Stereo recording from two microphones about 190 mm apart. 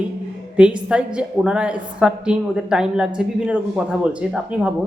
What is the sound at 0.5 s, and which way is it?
A woman's voice, 5° right (ahead or behind).